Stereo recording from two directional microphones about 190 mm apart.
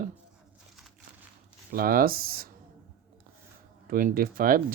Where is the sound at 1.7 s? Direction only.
50° right (ahead or behind).